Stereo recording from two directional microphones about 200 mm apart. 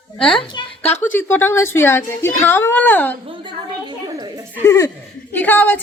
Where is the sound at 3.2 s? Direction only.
25° right (ahead or behind).